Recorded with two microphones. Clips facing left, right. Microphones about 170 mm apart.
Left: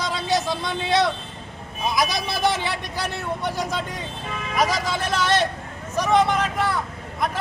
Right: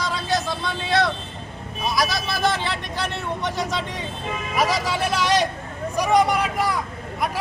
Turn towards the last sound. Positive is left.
turn(degrees=-10)  # may be behind; listen again after turning